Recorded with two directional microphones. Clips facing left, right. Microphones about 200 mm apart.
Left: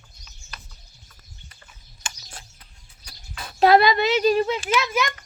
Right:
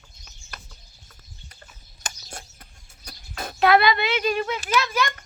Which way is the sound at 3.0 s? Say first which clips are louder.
Right 5 dB; 45° right (ahead or behind).